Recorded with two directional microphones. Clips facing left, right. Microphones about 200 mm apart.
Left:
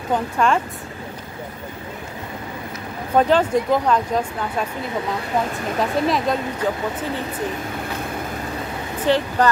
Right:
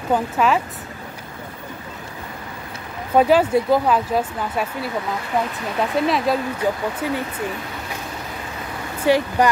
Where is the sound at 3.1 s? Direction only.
10° right (ahead or behind).